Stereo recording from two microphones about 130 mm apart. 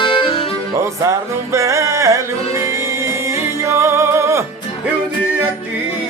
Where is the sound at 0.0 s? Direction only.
40° left (ahead or behind).